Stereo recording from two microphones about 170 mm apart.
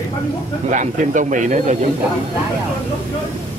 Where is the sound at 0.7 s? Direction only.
50° right (ahead or behind).